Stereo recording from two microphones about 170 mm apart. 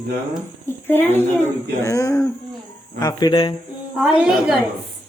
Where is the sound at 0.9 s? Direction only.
10° left (ahead or behind); by 3.5 s 30° left (ahead or behind).